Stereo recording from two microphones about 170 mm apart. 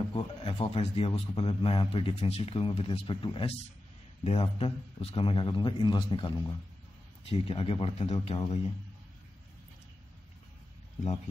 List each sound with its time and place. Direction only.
0.1 s a man's voice: 30° left (ahead or behind)